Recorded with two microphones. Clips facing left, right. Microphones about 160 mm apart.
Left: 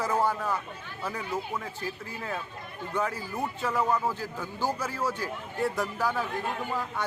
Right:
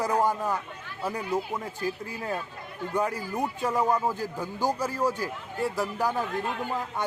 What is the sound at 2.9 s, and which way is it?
Speech, 15° right (ahead or behind).